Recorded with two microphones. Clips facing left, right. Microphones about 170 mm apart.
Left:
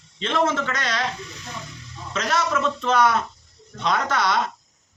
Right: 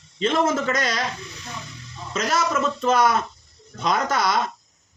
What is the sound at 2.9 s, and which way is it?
Speech, 40° right (ahead or behind).